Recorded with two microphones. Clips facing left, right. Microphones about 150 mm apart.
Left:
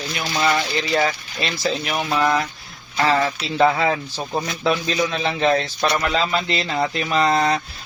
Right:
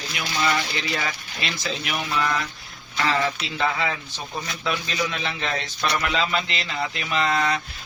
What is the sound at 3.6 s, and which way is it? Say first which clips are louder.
Speech: left 8 dB; 40° left (ahead or behind).